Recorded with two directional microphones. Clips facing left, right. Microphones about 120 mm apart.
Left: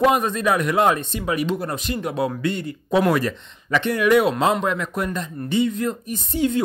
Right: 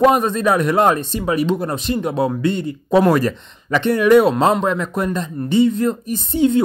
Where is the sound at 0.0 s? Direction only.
35° right (ahead or behind).